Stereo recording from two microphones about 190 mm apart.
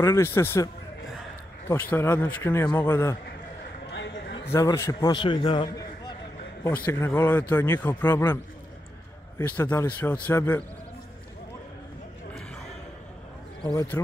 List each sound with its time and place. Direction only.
0.0 s a man's voice: 15° left (ahead or behind)
1.7 s a man's voice: 10° left (ahead or behind)
3.9 s a sound: 70° left (ahead or behind)
4.5 s a man's voice: 15° left (ahead or behind)
9.6 s a man's voice: 10° left (ahead or behind)
13.7 s a man's voice: 15° left (ahead or behind)